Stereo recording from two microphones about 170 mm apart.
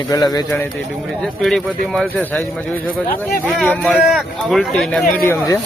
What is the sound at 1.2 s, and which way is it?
A man's voice, centre (ahead or behind).